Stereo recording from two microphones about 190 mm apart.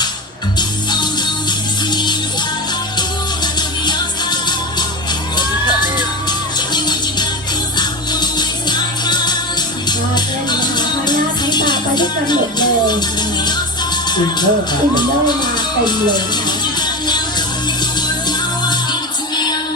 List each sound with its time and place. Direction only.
1.5 s music: 20° left (ahead or behind)
3.4 s music: 20° left (ahead or behind)
5.4 s a sound: 20° left (ahead or behind)
6.7 s music: 20° left (ahead or behind)
14.3 s speech: 20° left (ahead or behind)
16.8 s music: 20° left (ahead or behind)